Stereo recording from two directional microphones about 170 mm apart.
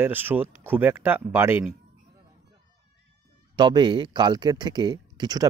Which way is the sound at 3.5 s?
25° right (ahead or behind).